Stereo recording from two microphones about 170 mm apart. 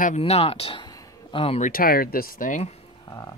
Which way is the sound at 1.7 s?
60° left (ahead or behind).